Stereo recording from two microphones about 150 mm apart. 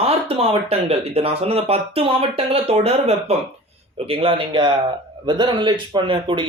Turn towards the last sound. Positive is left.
turn(degrees=-35)  # may be behind; listen again after turning